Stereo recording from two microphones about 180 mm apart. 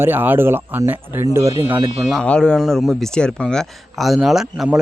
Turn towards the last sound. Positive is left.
turn(degrees=0)  # may be behind; listen again after turning